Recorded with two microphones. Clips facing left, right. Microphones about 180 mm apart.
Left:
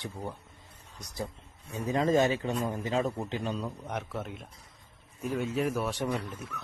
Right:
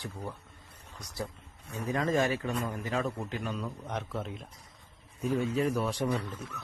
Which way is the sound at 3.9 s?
5° left (ahead or behind).